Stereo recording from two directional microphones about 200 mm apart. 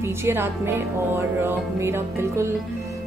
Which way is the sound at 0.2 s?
10° right (ahead or behind).